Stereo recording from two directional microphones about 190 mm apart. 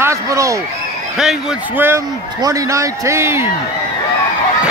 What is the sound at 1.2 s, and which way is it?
A man's voice, 5° right (ahead or behind).